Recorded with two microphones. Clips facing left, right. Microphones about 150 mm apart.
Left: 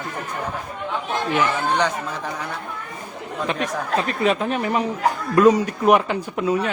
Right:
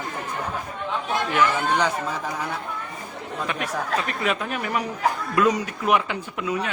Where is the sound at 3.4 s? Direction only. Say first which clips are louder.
Left 3 dB; 30° left (ahead or behind).